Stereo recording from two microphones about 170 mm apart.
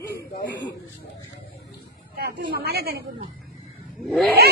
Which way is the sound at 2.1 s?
65° right (ahead or behind).